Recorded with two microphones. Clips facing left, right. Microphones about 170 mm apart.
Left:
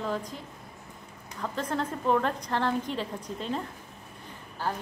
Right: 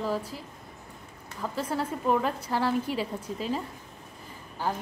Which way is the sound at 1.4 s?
5° right (ahead or behind).